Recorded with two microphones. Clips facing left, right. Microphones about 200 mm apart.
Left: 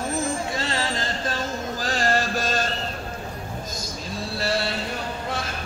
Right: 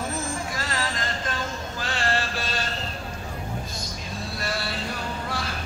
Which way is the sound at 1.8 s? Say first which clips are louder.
Left 3 dB; 40° left (ahead or behind).